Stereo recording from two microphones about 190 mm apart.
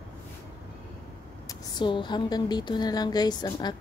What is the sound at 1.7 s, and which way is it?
A woman's voice, 25° left (ahead or behind).